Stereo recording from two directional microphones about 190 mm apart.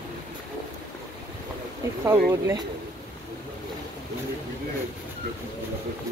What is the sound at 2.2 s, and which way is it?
Speech, 15° right (ahead or behind).